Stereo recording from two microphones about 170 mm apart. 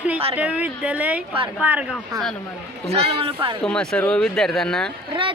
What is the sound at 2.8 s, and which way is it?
Speech, 35° right (ahead or behind).